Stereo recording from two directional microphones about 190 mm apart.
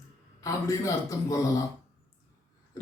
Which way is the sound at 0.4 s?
15° left (ahead or behind).